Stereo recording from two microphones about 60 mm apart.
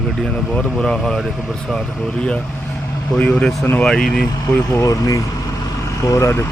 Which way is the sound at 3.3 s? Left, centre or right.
Centre.